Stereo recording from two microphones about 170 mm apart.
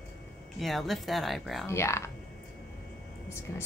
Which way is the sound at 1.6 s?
15° left (ahead or behind).